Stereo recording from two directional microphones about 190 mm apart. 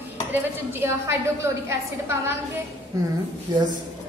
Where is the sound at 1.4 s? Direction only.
15° right (ahead or behind).